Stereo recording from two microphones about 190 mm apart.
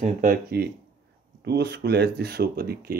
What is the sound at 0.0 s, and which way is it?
Speech, 45° right (ahead or behind).